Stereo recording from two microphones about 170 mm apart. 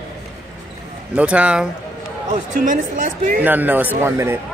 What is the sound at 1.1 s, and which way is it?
Speech, 5° right (ahead or behind).